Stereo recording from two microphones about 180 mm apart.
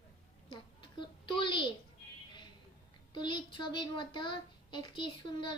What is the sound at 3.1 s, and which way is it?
A child's voice, 25° left (ahead or behind).